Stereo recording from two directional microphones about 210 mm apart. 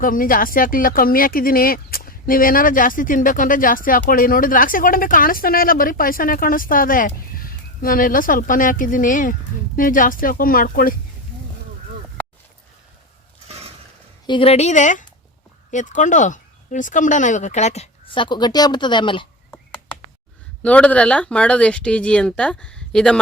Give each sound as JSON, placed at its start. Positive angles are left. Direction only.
{"t": 0.0, "sound": "speech", "side_deg": 40}
{"t": 14.3, "sound": "speech", "side_deg": 25}
{"t": 20.6, "sound": "speech", "side_deg": 5}